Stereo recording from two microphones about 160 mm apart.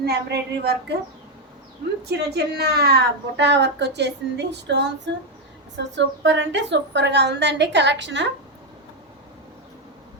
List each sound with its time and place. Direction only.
0.0 s a woman's voice: 85° right
2.0 s a woman's voice: 90° right